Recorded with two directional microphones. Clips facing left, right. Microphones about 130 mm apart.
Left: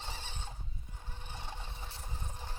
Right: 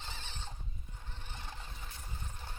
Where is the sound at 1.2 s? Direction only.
25° left (ahead or behind).